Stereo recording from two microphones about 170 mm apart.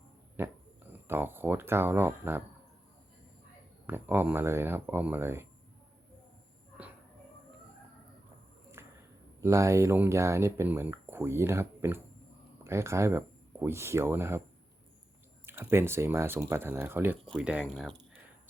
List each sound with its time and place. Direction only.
0.4 s speech: 15° right (ahead or behind)
3.8 s speech: 10° right (ahead or behind)
8.8 s a sound: 15° right (ahead or behind)
9.4 s speech: 15° right (ahead or behind)
15.4 s speech: 15° right (ahead or behind)